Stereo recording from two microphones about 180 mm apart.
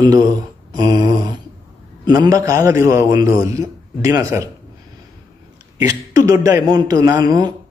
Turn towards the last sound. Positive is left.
turn(degrees=-20)  # may be behind; listen again after turning